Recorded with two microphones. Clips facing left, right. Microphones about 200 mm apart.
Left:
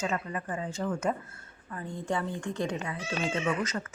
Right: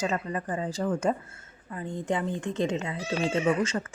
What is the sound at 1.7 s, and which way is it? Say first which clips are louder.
A woman's voice: right 3 dB; 20° right (ahead or behind).